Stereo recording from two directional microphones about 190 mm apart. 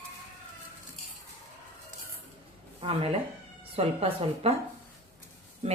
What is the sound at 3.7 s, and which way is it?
Speech, 30° right (ahead or behind).